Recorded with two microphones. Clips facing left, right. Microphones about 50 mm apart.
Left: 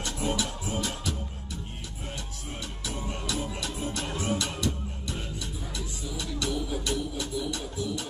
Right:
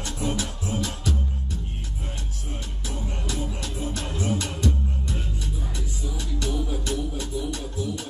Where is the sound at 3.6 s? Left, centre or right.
Left.